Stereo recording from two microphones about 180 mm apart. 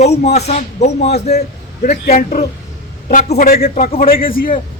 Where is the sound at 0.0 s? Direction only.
40° left (ahead or behind).